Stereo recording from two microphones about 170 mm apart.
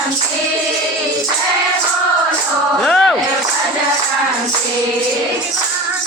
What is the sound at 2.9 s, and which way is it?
Speech, 5° left (ahead or behind).